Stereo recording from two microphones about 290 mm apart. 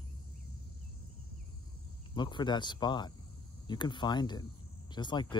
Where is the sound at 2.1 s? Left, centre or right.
Centre.